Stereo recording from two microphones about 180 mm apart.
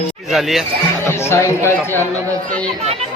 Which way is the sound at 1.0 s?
15° left (ahead or behind).